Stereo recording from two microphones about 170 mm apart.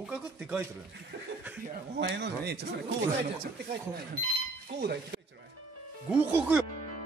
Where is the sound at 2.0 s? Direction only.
80° right.